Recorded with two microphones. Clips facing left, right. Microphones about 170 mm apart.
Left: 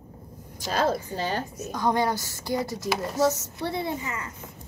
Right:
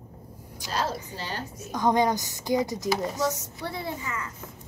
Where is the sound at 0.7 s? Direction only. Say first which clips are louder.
Left 5 dB; 50° left (ahead or behind).